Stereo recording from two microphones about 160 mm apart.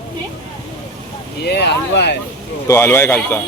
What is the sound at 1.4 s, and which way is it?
Speech, 90° left.